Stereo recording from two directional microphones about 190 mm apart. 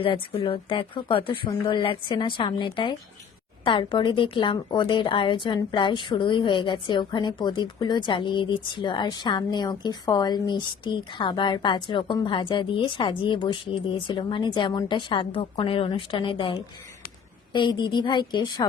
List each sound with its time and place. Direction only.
0.0 s speech: 25° left (ahead or behind)